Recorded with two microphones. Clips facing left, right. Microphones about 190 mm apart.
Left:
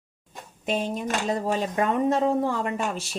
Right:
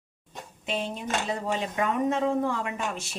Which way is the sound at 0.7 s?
40° left (ahead or behind).